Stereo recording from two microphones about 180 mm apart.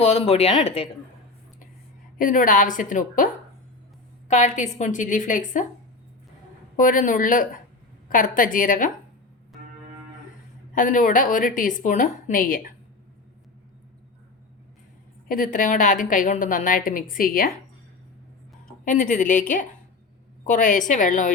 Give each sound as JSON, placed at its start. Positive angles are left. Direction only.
{"t": 0.0, "sound": "speech", "side_deg": 35}
{"t": 2.1, "sound": "a woman's voice", "side_deg": 50}
{"t": 4.3, "sound": "a woman's voice", "side_deg": 40}
{"t": 6.7, "sound": "a woman's voice", "side_deg": 45}
{"t": 10.8, "sound": "a woman's voice", "side_deg": 45}
{"t": 15.5, "sound": "a woman's voice", "side_deg": 45}
{"t": 18.9, "sound": "a woman's voice", "side_deg": 45}